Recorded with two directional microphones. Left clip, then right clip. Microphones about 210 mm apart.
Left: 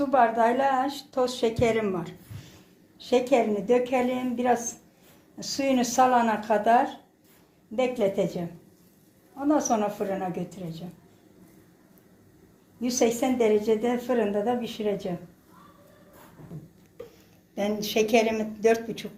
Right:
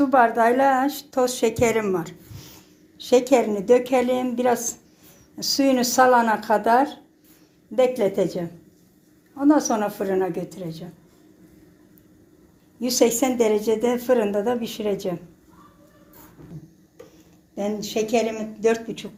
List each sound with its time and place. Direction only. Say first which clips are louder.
0.0 s a woman's voice: right 4 dB; 40° right (ahead or behind)
12.8 s a woman's voice: right 5 dB; 45° right (ahead or behind)
17.5 s a woman's voice: right 1 dB; 30° right (ahead or behind)